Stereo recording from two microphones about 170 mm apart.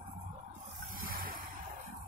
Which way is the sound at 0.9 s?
55° right (ahead or behind).